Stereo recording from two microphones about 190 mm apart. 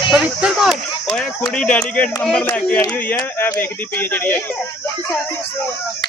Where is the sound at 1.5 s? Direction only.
5° left (ahead or behind).